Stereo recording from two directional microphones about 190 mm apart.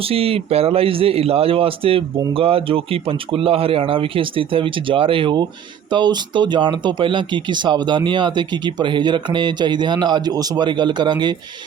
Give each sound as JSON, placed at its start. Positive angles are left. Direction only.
{"t": 0.0, "sound": "speech", "side_deg": -30}